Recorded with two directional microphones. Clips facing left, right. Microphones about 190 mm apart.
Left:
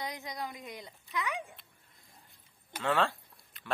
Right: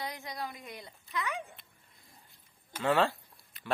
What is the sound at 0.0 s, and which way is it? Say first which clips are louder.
A woman's voice: even; 15° left (ahead or behind).